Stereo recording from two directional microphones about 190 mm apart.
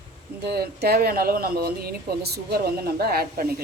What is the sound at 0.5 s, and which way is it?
Speech, 55° right (ahead or behind).